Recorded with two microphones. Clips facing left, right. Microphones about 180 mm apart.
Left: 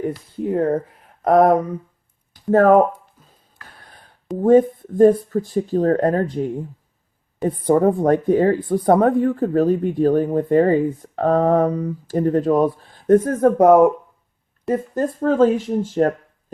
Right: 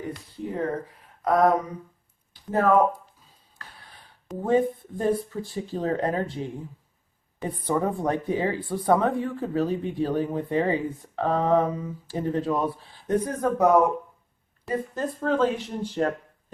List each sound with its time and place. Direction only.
1.2 s speech: 55° left (ahead or behind)
4.4 s speech: 45° left (ahead or behind)